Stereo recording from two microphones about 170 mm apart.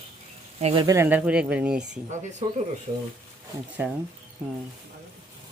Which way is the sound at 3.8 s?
5° right (ahead or behind).